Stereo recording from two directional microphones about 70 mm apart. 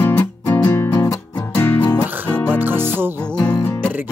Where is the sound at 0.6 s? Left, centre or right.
Left.